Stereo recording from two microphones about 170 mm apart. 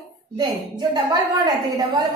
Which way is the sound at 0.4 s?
25° right (ahead or behind).